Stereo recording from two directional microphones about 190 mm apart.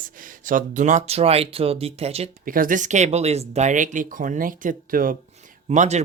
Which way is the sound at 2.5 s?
45° right (ahead or behind).